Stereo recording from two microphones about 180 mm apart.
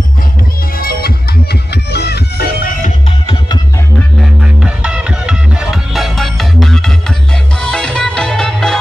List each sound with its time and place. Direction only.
0.7 s music: 55° left (ahead or behind)
4.2 s music: 5° right (ahead or behind)